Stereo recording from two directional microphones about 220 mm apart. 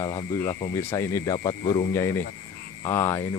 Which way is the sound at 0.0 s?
15° left (ahead or behind).